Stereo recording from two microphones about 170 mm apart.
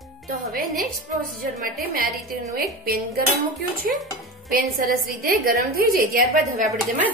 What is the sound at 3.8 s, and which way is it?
A woman's voice, 60° right (ahead or behind).